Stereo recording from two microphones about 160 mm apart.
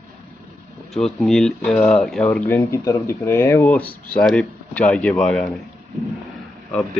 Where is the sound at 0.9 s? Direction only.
Centre (ahead or behind).